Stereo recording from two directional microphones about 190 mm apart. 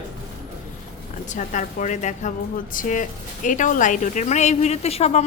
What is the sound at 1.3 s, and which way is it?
A woman's voice, 40° left (ahead or behind).